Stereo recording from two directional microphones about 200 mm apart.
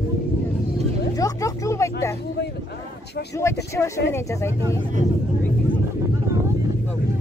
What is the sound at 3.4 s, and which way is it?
Speech, 15° left (ahead or behind).